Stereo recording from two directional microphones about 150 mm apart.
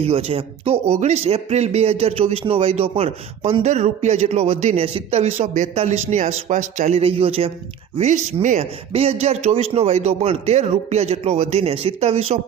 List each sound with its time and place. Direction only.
0.0 s speech: 40° right (ahead or behind)